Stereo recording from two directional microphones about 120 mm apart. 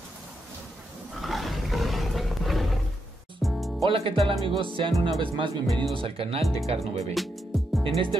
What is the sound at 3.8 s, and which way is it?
Speech, 50° right (ahead or behind).